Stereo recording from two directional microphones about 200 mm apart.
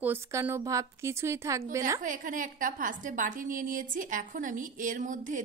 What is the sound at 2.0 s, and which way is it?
A woman's voice, 40° right (ahead or behind).